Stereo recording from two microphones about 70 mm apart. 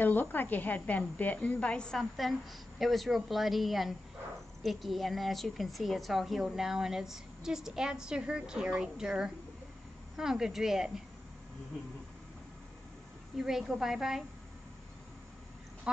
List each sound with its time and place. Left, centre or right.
0.0 s a woman's voice: left
2.0 s a woman's voice: centre
13.4 s speech: centre